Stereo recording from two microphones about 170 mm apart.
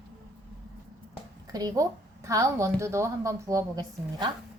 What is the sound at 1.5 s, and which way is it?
A woman's voice, 20° right (ahead or behind).